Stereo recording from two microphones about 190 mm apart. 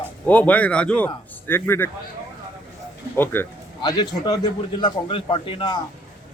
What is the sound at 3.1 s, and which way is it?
A man's voice, 10° left (ahead or behind).